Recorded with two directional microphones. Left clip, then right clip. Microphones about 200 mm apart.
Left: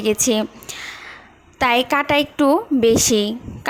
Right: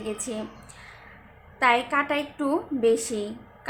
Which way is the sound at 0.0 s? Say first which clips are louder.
Left 14 dB; 45° left (ahead or behind).